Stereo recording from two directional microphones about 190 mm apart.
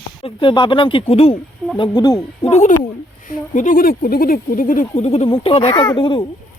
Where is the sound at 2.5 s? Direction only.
35° left (ahead or behind).